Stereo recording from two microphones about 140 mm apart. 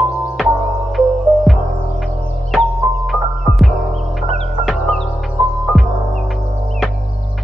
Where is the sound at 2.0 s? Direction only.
Centre (ahead or behind).